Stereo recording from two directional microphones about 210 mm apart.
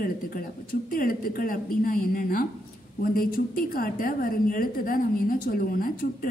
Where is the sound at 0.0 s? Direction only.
45° left (ahead or behind).